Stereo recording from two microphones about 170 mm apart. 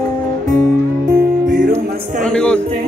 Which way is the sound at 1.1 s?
60° right (ahead or behind).